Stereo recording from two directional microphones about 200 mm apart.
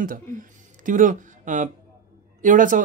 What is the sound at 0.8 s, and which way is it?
Speech, 40° right (ahead or behind).